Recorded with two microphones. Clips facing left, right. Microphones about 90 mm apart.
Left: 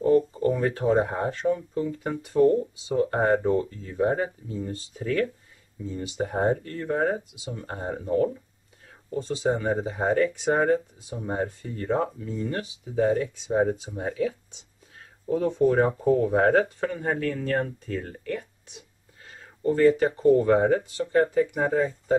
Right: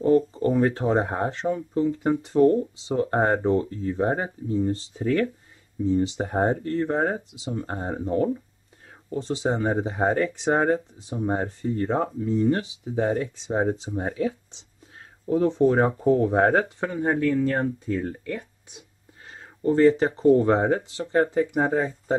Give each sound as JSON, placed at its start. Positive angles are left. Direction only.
{"t": 0.0, "sound": "speech", "side_deg": -30}
{"t": 19.6, "sound": "speech", "side_deg": -25}